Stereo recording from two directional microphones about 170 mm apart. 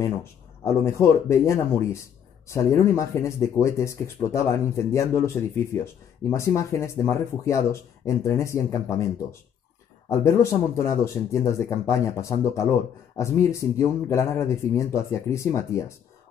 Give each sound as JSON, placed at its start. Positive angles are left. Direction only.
{"t": 0.0, "sound": "speech", "side_deg": 15}